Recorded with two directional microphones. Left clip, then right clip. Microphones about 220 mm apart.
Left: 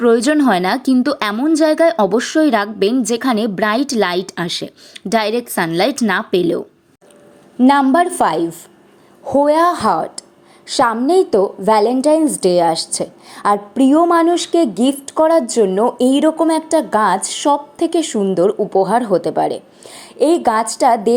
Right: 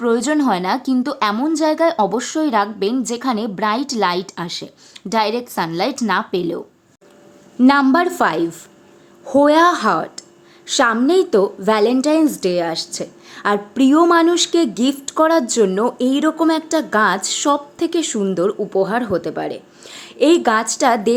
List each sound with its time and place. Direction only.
0.0 s speech: 20° left (ahead or behind)
7.7 s a woman's voice: 5° left (ahead or behind)